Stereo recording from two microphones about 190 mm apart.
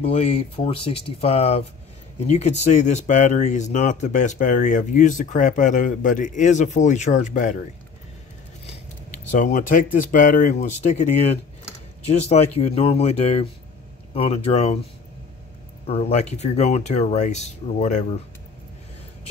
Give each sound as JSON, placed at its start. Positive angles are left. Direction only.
{"t": 0.0, "sound": "speech", "side_deg": 30}
{"t": 9.1, "sound": "speech", "side_deg": 40}
{"t": 15.9, "sound": "speech", "side_deg": 35}